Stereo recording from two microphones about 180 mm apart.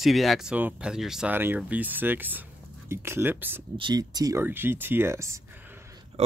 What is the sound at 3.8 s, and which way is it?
Speech, 25° right (ahead or behind).